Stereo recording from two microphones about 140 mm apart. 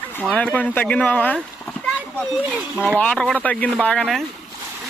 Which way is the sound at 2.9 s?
10° left (ahead or behind).